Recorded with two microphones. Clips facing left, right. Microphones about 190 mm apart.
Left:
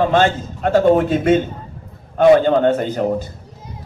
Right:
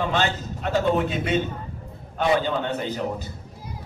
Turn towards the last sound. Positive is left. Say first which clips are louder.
# left 8 dB
turn(degrees=50)  # may be behind; listen again after turning